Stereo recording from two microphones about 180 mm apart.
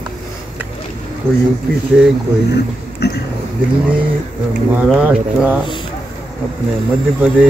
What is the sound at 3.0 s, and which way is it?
Speech, 65° left (ahead or behind).